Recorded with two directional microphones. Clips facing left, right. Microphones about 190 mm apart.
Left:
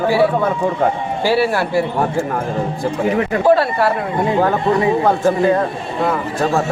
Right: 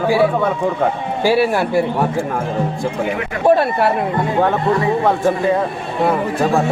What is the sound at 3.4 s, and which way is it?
Speech, 20° right (ahead or behind).